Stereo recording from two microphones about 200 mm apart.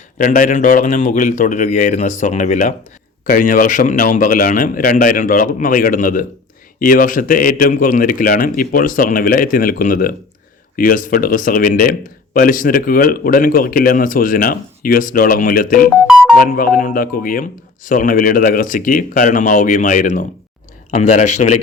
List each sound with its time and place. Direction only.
0.2 s a man's voice: 40° left (ahead or behind)
15.9 s music: 5° right (ahead or behind)
16.4 s a man's voice: 45° left (ahead or behind)